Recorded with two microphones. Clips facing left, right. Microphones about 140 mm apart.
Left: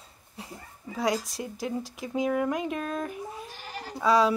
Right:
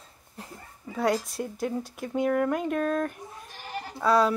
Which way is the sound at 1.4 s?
5° left (ahead or behind).